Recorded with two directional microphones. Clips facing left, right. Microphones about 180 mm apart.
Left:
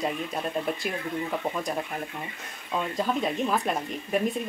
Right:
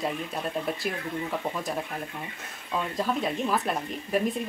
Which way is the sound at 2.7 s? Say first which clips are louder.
Left 1 dB; centre (ahead or behind).